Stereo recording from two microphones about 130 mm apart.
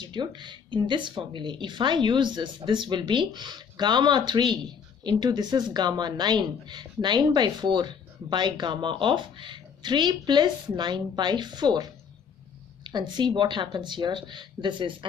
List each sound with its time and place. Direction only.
0.0 s a woman's voice: 35° right (ahead or behind)